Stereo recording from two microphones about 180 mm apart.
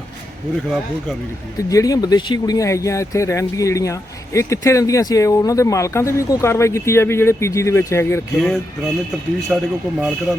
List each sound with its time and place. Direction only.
1.7 s speech: 20° left (ahead or behind)
8.4 s a man's voice: centre (ahead or behind)